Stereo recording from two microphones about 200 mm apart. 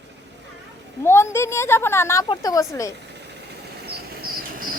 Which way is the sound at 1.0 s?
10° left (ahead or behind).